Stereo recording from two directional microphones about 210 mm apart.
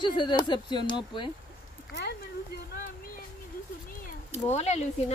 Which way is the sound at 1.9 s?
55° left (ahead or behind).